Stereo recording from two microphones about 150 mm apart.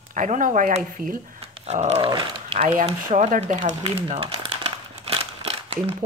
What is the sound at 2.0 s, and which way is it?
Speech, 30° right (ahead or behind).